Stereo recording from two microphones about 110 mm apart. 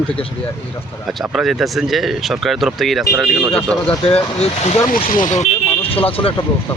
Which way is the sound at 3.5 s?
10° left (ahead or behind).